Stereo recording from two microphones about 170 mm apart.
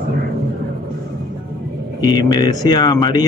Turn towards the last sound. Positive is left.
turn(degrees=25)  # may be behind; listen again after turning